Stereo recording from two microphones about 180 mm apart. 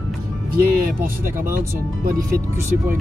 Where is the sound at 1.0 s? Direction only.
10° right (ahead or behind).